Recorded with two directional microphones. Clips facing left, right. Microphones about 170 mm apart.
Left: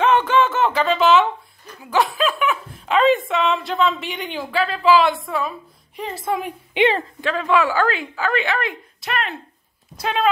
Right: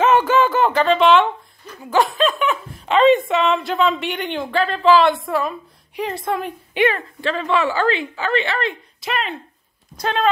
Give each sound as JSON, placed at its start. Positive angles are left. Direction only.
{"t": 0.0, "sound": "music", "side_deg": -5}
{"t": 1.8, "sound": "a woman's voice", "side_deg": 0}
{"t": 6.8, "sound": "speech", "side_deg": 25}
{"t": 7.2, "sound": "a woman's voice", "side_deg": 10}